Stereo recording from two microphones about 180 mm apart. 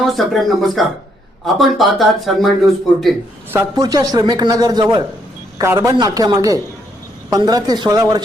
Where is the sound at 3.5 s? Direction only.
20° right (ahead or behind).